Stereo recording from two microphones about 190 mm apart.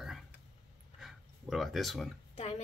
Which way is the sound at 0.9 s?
Centre (ahead or behind).